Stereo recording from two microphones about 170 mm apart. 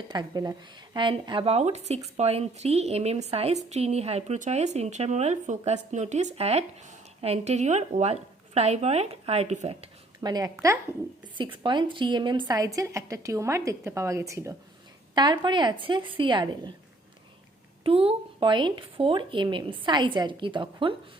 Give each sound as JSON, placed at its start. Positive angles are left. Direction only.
{"t": 0.1, "sound": "a woman's voice", "side_deg": -25}
{"t": 10.2, "sound": "speech", "side_deg": -20}
{"t": 17.8, "sound": "speech", "side_deg": -35}